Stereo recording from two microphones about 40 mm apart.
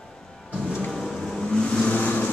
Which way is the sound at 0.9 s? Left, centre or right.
Centre.